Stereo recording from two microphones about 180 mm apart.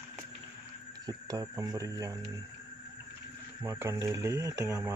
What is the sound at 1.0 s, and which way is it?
Speech, 20° right (ahead or behind).